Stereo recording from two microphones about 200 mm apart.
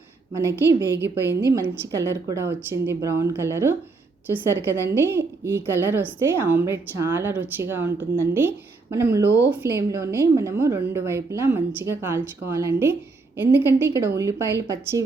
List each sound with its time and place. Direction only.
0.3 s a woman's voice: 15° right (ahead or behind)
0.9 s a woman's voice: 60° right (ahead or behind)
1.5 s a woman's voice: 15° right (ahead or behind)